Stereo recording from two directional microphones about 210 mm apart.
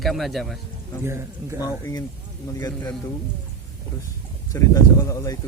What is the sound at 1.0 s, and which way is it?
Speech, 15° right (ahead or behind).